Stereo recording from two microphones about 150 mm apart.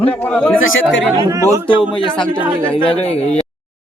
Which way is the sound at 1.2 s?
25° right (ahead or behind).